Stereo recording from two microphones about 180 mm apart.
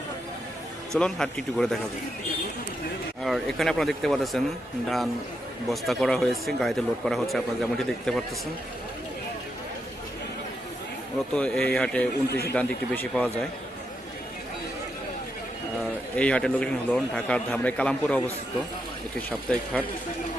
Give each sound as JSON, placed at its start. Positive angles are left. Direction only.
{"t": 0.9, "sound": "speech", "side_deg": 5}
{"t": 3.2, "sound": "speech", "side_deg": 0}
{"t": 5.6, "sound": "speech", "side_deg": 0}
{"t": 11.3, "sound": "speech", "side_deg": 5}
{"t": 12.3, "sound": "a man's voice", "side_deg": 65}
{"t": 12.5, "sound": "speech", "side_deg": 10}
{"t": 15.8, "sound": "speech", "side_deg": 5}
{"t": 19.5, "sound": "speech", "side_deg": 5}